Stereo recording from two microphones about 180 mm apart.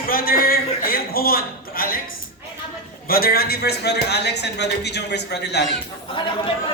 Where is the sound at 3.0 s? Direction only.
55° left (ahead or behind).